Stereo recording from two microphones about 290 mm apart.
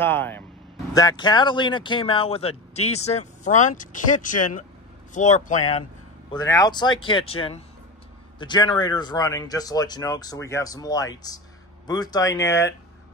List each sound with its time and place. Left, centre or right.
0.0 s speech: centre; by 5.9 s left
6.3 s speech: centre